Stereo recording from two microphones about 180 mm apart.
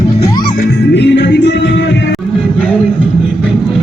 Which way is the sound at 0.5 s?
65° left (ahead or behind).